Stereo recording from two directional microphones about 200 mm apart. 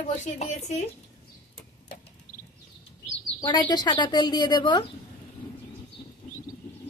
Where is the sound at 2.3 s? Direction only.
45° left (ahead or behind).